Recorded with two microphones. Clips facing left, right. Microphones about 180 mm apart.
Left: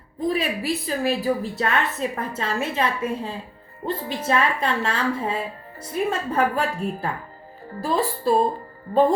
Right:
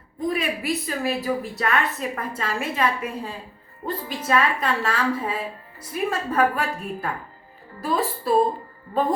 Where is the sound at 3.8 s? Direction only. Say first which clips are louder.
Left 2 dB; 30° left (ahead or behind).